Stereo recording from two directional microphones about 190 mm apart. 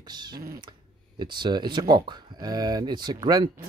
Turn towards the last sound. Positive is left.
turn(degrees=-20)  # may be behind; listen again after turning